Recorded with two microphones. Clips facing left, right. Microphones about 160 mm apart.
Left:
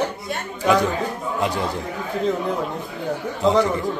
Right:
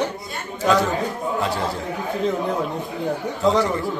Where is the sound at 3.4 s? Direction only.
20° left (ahead or behind).